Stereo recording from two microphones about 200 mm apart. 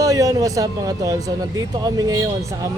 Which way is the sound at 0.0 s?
15° right (ahead or behind).